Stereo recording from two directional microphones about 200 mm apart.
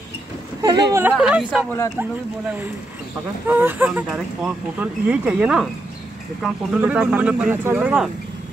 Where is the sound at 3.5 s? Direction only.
10° right (ahead or behind).